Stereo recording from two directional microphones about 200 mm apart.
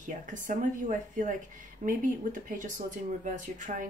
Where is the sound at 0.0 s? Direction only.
40° right (ahead or behind).